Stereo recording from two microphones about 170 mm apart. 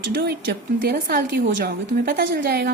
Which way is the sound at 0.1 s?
65° right (ahead or behind).